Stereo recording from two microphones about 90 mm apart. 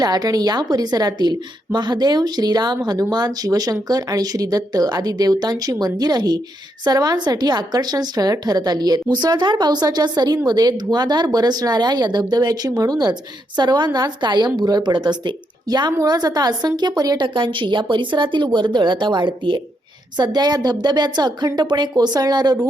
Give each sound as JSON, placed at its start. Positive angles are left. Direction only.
{"t": 0.0, "sound": "a woman's voice", "side_deg": -45}
{"t": 17.2, "sound": "a woman's voice", "side_deg": -65}